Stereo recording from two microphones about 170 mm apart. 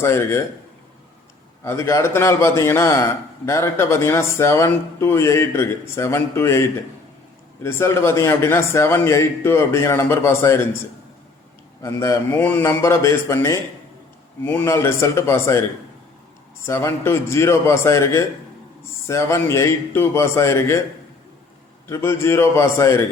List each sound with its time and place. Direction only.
0.0 s a man's voice: 15° left (ahead or behind)
1.6 s a man's voice: 15° left (ahead or behind)
11.8 s a man's voice: 15° left (ahead or behind)
16.6 s a man's voice: 15° left (ahead or behind)
21.8 s a man's voice: 15° left (ahead or behind)